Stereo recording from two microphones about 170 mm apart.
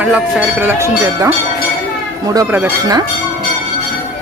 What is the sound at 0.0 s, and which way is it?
Speech, 10° right (ahead or behind).